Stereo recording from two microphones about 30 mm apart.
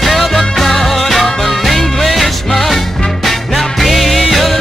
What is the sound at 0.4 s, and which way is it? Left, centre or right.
Music, centre.